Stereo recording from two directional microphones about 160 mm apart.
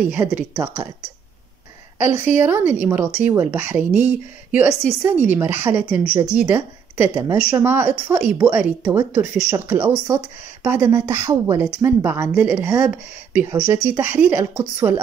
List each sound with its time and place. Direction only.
0.0 s a woman's voice: 10° right (ahead or behind)
2.0 s a woman's voice: 15° right (ahead or behind)